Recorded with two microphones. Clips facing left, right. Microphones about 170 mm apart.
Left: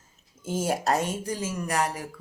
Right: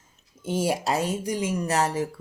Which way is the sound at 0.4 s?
15° right (ahead or behind).